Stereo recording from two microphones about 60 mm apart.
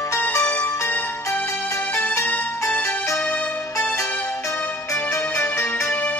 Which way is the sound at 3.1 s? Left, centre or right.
Centre.